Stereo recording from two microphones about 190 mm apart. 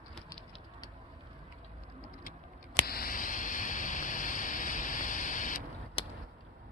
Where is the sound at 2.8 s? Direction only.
50° left (ahead or behind).